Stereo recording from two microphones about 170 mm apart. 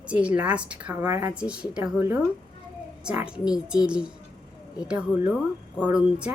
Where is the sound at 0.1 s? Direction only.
5° right (ahead or behind).